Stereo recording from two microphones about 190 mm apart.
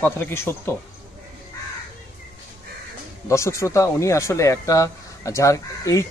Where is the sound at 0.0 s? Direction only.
10° left (ahead or behind).